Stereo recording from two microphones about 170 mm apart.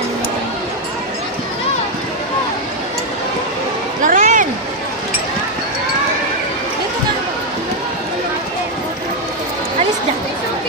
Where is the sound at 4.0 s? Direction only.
50° right (ahead or behind).